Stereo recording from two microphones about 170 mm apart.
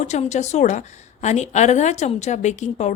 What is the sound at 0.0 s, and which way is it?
A woman's voice, 40° left (ahead or behind).